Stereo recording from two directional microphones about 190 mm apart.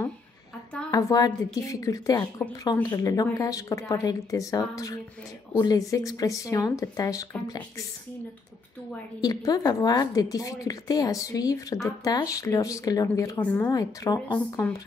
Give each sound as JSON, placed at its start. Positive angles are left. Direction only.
{"t": 0.9, "sound": "a woman's voice", "side_deg": 20}
{"t": 9.2, "sound": "a woman's voice", "side_deg": 20}
{"t": 13.7, "sound": "a woman's voice", "side_deg": 20}